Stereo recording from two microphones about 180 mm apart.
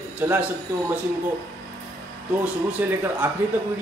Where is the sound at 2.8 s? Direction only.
10° right (ahead or behind).